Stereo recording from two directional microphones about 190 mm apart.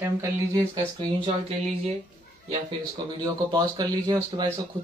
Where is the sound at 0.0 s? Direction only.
15° right (ahead or behind).